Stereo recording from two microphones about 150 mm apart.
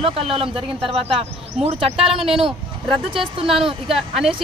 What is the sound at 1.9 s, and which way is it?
Speech, 5° right (ahead or behind).